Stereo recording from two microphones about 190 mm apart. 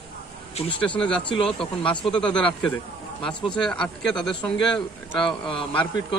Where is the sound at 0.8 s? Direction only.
5° left (ahead or behind).